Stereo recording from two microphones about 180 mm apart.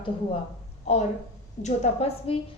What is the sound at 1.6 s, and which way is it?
Speech, 35° left (ahead or behind).